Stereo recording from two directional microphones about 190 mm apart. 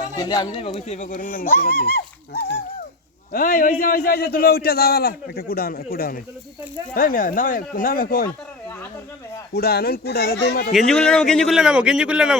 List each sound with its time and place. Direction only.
0.2 s speech: 20° left (ahead or behind)
0.7 s a man's voice: 35° left (ahead or behind); by 8.3 s 50° left (ahead or behind)
9.5 s speech: 55° left (ahead or behind)
10.8 s a man's voice: 5° left (ahead or behind)